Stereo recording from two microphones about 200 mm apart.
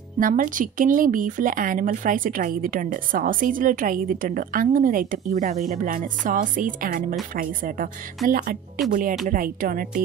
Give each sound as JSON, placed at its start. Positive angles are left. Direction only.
{"t": 0.2, "sound": "speech", "side_deg": -40}
{"t": 8.8, "sound": "speech", "side_deg": 0}
{"t": 9.3, "sound": "speech", "side_deg": -45}